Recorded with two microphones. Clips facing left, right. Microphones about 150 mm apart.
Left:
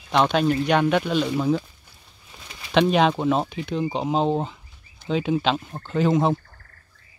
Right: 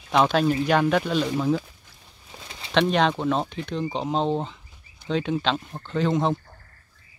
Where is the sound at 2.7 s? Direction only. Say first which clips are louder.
Left 2 dB; 5° left (ahead or behind).